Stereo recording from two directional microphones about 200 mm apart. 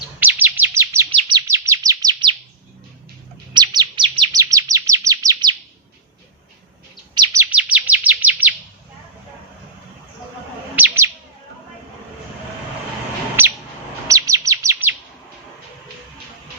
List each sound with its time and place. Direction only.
0.2 s chirp: 10° right (ahead or behind)
3.5 s chirp: 20° right (ahead or behind)
7.1 s chirp: 20° right (ahead or behind)
7.5 s chirp: 5° right (ahead or behind)
10.8 s chirp: 10° right (ahead or behind)
13.4 s bird: 10° right (ahead or behind)
14.1 s chirp: 15° right (ahead or behind)